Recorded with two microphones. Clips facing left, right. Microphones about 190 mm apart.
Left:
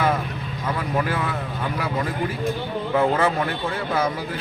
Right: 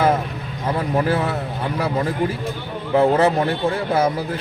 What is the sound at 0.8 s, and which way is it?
Speech, 35° right (ahead or behind).